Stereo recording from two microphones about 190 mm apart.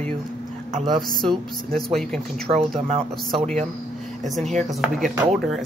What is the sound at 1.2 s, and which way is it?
Speech, centre (ahead or behind).